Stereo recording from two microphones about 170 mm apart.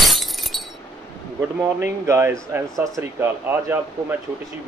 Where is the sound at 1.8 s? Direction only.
15° right (ahead or behind).